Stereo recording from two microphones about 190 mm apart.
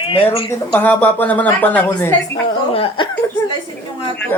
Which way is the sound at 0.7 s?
10° left (ahead or behind).